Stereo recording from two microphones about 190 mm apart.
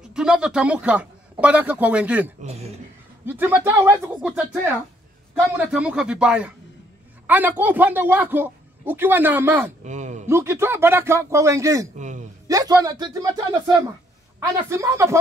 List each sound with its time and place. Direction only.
0.1 s speech: 5° right (ahead or behind)
2.4 s speech: 35° right (ahead or behind)
3.3 s speech: 10° right (ahead or behind)
9.8 s speech: 40° right (ahead or behind)
10.2 s speech: 15° right (ahead or behind)
12.0 s speech: 40° right (ahead or behind)
12.4 s speech: 20° right (ahead or behind)